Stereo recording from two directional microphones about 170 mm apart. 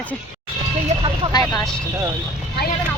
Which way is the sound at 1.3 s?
20° left (ahead or behind).